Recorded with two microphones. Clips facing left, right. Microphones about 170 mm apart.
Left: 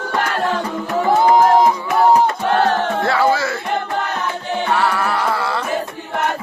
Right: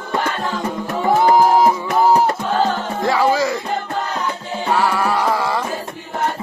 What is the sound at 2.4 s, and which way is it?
Music, 70° left (ahead or behind).